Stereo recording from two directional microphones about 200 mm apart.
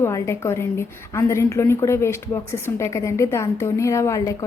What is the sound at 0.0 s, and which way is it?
A woman's voice, 15° left (ahead or behind).